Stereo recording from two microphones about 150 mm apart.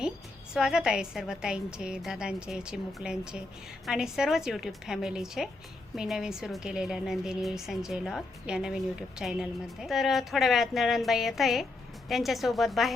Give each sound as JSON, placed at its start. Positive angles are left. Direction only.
{"t": 0.5, "sound": "a woman's voice", "side_deg": -5}